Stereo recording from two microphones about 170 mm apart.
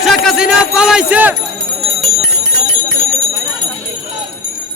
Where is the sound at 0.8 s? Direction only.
5° right (ahead or behind).